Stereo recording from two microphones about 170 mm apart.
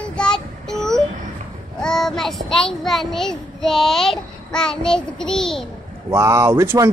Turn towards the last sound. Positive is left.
turn(degrees=-15)  # may be behind; listen again after turning